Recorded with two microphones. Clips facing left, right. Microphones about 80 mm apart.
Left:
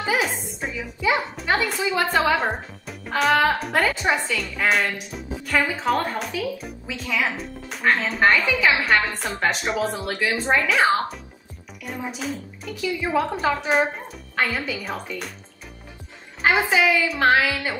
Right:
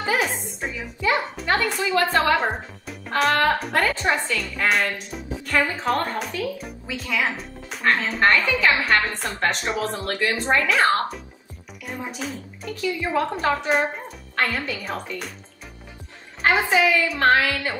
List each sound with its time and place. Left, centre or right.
0.0 s a woman's voice: centre
16.4 s a woman's voice: centre